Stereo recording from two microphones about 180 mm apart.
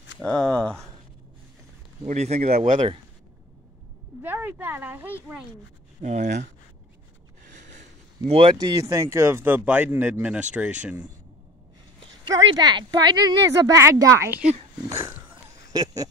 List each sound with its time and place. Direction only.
0.2 s speech: 5° left (ahead or behind)
2.0 s speech: 40° right (ahead or behind)
4.2 s speech: 10° right (ahead or behind)
6.0 s speech: 40° right (ahead or behind)
8.3 s speech: 30° right (ahead or behind); by 11.1 s 5° right (ahead or behind)
12.3 s a woman's voice: 20° right (ahead or behind)
15.7 s a sound: 20° right (ahead or behind)